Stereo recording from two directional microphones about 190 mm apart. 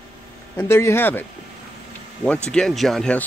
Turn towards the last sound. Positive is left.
turn(degrees=5)  # may be behind; listen again after turning